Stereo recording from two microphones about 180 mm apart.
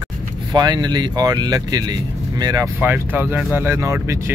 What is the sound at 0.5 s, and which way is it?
Speech, 25° right (ahead or behind).